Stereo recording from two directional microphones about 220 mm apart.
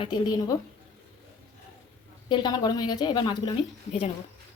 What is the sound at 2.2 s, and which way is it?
A woman's voice, 20° left (ahead or behind).